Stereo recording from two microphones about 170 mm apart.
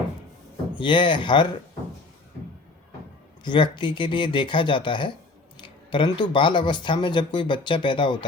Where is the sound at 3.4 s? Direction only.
30° left (ahead or behind).